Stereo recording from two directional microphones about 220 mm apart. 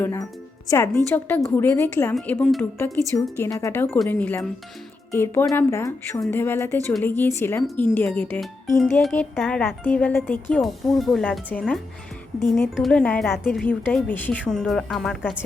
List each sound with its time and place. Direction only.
0.0 s speech: 10° left (ahead or behind)